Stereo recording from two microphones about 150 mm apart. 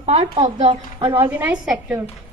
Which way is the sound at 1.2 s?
15° right (ahead or behind).